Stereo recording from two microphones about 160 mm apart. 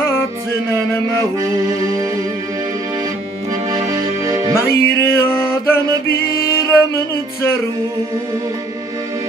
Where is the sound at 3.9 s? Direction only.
20° right (ahead or behind).